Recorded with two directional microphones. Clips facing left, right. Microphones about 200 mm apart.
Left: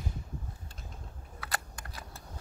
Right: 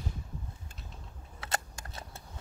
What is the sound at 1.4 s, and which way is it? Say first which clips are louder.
Camera: right 3 dB; 25° right (ahead or behind).